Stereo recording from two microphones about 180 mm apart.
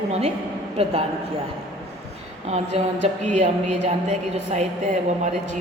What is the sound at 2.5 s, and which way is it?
Speech, 35° right (ahead or behind).